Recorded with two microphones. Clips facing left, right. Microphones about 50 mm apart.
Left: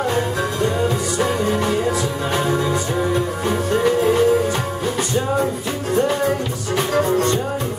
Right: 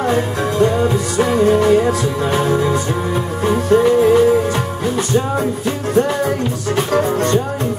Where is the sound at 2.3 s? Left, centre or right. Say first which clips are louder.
Right 3 dB; right.